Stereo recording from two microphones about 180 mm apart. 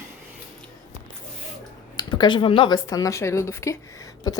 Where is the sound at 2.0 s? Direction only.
25° left (ahead or behind).